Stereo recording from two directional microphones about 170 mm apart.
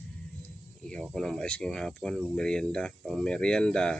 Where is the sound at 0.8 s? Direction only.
5° left (ahead or behind).